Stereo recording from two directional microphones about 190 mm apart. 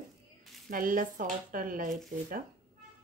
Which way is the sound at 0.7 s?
45° right (ahead or behind).